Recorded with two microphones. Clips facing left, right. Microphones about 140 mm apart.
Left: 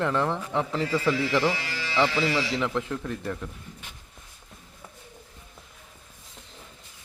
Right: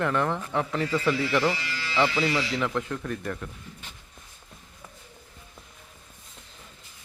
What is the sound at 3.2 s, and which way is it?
Speech, 10° left (ahead or behind).